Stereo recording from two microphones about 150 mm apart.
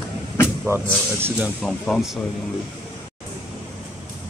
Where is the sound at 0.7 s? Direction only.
20° right (ahead or behind).